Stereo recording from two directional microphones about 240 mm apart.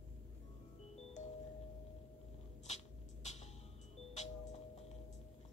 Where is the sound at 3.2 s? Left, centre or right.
Left.